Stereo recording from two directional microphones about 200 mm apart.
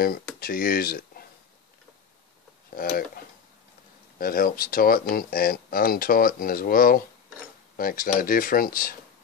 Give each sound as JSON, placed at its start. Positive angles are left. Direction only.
{"t": 0.4, "sound": "speech", "side_deg": 45}
{"t": 2.7, "sound": "speech", "side_deg": 45}
{"t": 4.2, "sound": "speech", "side_deg": 45}